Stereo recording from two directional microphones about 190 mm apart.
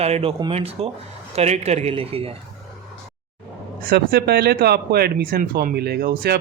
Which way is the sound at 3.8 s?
50° right (ahead or behind).